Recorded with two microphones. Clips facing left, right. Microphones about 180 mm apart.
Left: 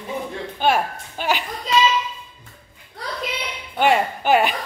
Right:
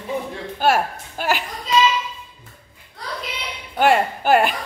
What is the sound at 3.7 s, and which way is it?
Speech, 5° right (ahead or behind).